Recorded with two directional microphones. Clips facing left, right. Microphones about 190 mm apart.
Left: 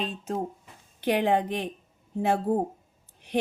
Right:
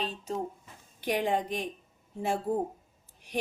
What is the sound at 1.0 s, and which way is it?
Speech, 65° left (ahead or behind).